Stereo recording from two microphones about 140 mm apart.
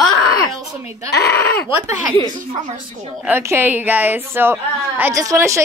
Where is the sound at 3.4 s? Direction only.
15° right (ahead or behind).